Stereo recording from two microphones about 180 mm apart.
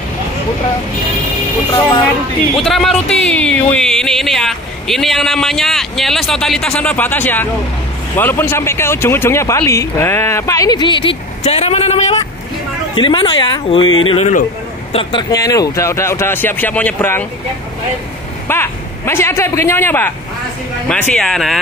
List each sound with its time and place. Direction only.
2.6 s speech: centre (ahead or behind)
18.5 s a man's voice: 15° left (ahead or behind)